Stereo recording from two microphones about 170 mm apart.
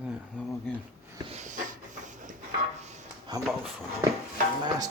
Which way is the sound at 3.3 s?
25° right (ahead or behind).